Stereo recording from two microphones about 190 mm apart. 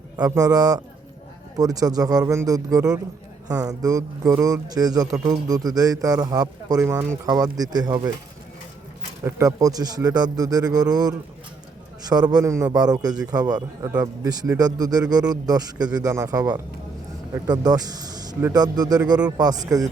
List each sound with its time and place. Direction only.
0.2 s speech: 20° right (ahead or behind)
9.2 s speech: 15° right (ahead or behind)